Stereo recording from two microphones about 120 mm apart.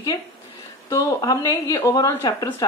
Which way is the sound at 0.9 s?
25° left (ahead or behind).